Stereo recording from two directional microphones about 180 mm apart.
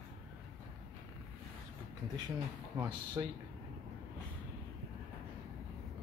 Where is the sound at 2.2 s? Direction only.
20° right (ahead or behind).